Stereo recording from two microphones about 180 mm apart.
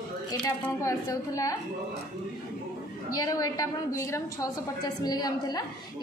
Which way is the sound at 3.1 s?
20° left (ahead or behind).